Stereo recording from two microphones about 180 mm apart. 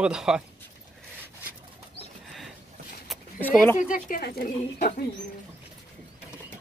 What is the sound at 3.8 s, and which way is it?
Speech, 50° left (ahead or behind).